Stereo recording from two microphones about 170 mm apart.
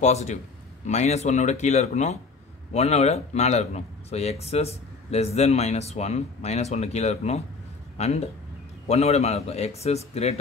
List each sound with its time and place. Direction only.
0.0 s speech: 40° left (ahead or behind)